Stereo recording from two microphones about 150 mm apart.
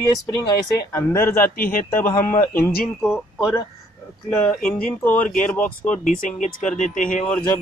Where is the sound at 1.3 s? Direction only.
70° left (ahead or behind).